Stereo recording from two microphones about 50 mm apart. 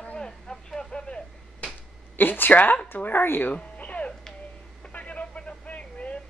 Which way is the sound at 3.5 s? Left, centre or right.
Left.